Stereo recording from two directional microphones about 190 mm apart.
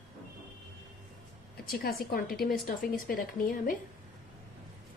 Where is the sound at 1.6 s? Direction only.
55° left (ahead or behind).